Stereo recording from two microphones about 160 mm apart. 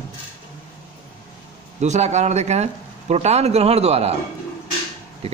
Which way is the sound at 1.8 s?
45° right (ahead or behind).